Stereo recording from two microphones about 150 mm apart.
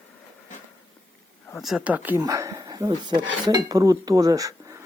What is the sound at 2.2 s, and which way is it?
Speech, 20° right (ahead or behind).